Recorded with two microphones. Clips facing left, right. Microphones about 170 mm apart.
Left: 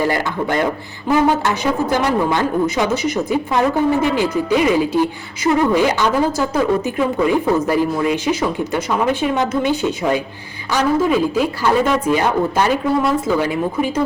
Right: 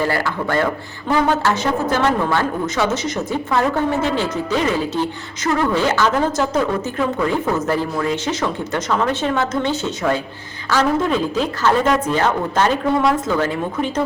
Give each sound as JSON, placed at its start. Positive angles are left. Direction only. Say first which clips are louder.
{"t": 0.0, "sound": "speech", "louder": "left 2 dB", "side_deg": 15}